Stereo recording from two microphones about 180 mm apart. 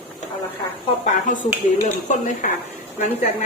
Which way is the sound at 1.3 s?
45° left (ahead or behind).